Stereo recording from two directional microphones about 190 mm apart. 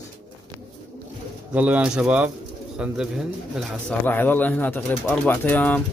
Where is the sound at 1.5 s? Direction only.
5° right (ahead or behind).